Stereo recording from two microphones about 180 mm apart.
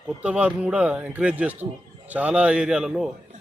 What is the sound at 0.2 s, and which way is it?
Speech, 5° right (ahead or behind).